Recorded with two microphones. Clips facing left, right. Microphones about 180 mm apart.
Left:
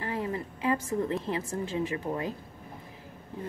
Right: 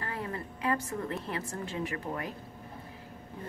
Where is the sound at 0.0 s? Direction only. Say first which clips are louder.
Left 5 dB; 20° left (ahead or behind).